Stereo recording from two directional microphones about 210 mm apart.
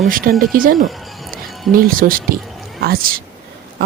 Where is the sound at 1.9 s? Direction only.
40° right (ahead or behind).